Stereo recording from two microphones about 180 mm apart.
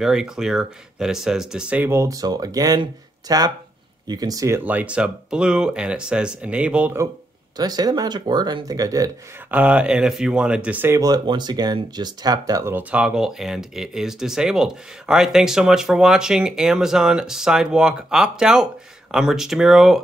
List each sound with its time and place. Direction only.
0.0 s speech: 5° right (ahead or behind)
7.5 s speech: 20° right (ahead or behind)
9.5 s speech: 5° right (ahead or behind)